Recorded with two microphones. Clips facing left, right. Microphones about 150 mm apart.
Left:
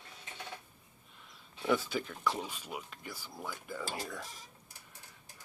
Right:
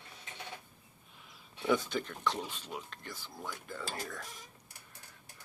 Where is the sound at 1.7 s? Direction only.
5° left (ahead or behind).